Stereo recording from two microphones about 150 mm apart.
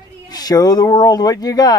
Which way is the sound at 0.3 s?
25° left (ahead or behind).